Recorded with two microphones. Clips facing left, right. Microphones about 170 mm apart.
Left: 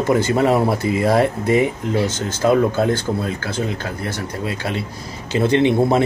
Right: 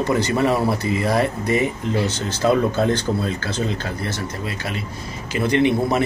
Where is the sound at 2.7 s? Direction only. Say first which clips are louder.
Left 1 dB; 10° left (ahead or behind).